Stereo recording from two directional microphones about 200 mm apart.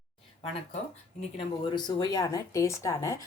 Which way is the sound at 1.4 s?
25° left (ahead or behind).